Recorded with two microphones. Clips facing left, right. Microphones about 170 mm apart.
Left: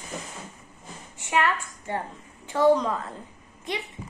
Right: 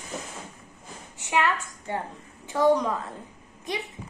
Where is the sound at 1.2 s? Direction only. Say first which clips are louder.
Even; 20° right (ahead or behind).